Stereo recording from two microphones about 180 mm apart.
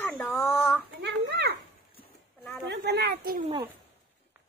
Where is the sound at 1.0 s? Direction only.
65° right (ahead or behind).